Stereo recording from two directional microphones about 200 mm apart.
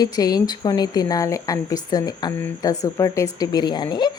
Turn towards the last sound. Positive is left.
turn(degrees=20)  # may be behind; listen again after turning